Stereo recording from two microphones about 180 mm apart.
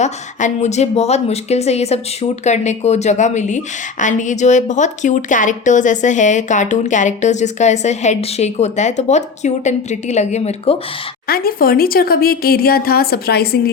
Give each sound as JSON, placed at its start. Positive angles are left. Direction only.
{"t": 0.0, "sound": "speech", "side_deg": 40}
{"t": 11.3, "sound": "speech", "side_deg": 55}